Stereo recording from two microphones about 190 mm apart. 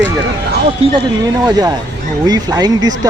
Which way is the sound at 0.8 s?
20° right (ahead or behind).